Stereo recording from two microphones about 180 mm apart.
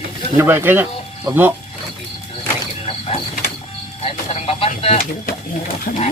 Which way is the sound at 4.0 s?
35° left (ahead or behind).